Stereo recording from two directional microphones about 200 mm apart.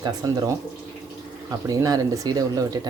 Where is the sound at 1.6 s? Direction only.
20° right (ahead or behind).